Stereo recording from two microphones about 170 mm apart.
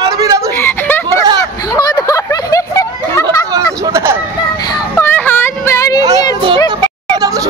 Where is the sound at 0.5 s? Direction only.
10° left (ahead or behind).